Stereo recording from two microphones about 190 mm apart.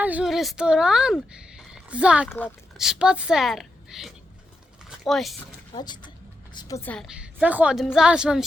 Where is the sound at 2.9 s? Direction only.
5° right (ahead or behind).